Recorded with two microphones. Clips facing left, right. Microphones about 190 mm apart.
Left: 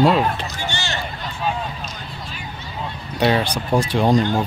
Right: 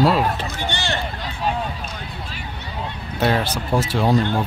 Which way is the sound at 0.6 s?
55° right (ahead or behind).